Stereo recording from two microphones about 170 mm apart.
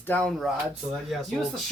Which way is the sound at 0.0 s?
10° left (ahead or behind).